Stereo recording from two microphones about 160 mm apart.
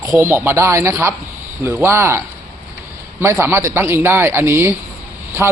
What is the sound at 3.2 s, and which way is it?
A man's voice, 15° right (ahead or behind).